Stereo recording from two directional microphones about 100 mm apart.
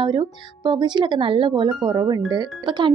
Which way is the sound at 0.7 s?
50° right (ahead or behind).